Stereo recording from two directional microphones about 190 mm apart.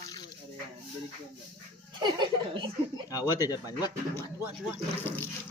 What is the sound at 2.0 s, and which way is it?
Speech, 25° right (ahead or behind).